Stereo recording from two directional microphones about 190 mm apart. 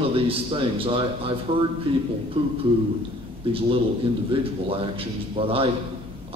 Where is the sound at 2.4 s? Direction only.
30° right (ahead or behind).